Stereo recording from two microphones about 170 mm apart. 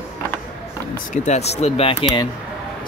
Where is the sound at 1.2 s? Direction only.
40° left (ahead or behind).